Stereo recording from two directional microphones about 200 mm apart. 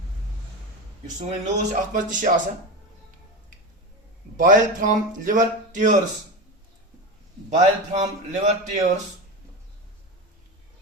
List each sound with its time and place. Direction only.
1.2 s speech: 40° right (ahead or behind)
4.4 s speech: 40° right (ahead or behind)
7.5 s speech: 35° right (ahead or behind)